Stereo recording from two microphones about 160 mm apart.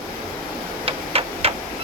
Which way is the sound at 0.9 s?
35° right (ahead or behind).